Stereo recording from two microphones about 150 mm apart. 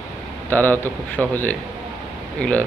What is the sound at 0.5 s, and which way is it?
Speech, 10° left (ahead or behind).